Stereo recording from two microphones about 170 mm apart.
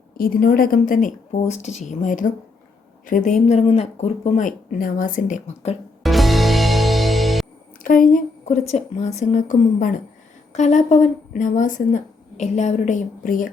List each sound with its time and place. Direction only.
0.2 s a woman's voice: 60° left (ahead or behind)
6.0 s music: centre (ahead or behind)
7.9 s a woman's voice: 50° left (ahead or behind)